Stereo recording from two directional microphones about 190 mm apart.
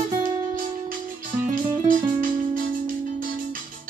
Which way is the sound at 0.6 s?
45° right (ahead or behind).